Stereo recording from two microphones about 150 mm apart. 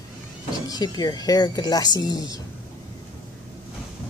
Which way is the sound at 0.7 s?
25° left (ahead or behind).